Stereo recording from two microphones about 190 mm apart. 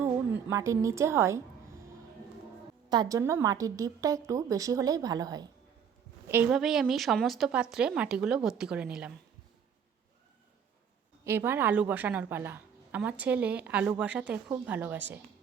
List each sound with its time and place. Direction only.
0.5 s a woman's voice: 15° right (ahead or behind)
2.9 s a woman's voice: 20° right (ahead or behind)
6.2 s a woman's voice: 10° right (ahead or behind)
11.3 s a woman's voice: 10° right (ahead or behind)